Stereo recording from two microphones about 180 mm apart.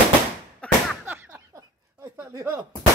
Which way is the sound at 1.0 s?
10° right (ahead or behind).